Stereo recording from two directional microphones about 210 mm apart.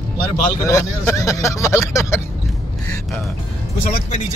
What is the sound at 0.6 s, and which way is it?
Speech, 15° left (ahead or behind).